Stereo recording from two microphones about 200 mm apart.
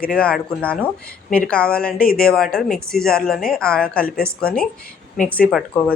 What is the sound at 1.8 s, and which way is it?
Speech, 45° left (ahead or behind).